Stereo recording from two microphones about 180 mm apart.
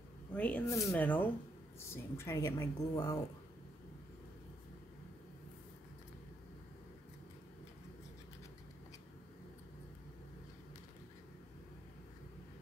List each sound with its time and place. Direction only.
0.3 s speech: 10° left (ahead or behind)